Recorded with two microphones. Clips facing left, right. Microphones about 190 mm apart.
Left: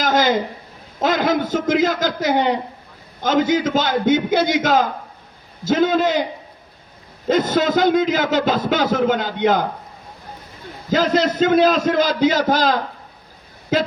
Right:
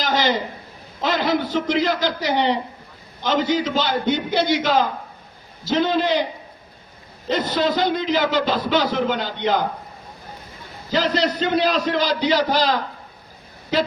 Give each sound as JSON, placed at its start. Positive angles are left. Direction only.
{"t": 0.0, "sound": "a sound", "side_deg": 50}
{"t": 1.0, "sound": "a man's voice", "side_deg": 50}
{"t": 7.3, "sound": "a man's voice", "side_deg": 45}
{"t": 10.9, "sound": "a man's voice", "side_deg": 45}